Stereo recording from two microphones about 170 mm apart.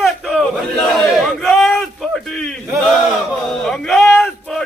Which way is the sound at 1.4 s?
Centre (ahead or behind).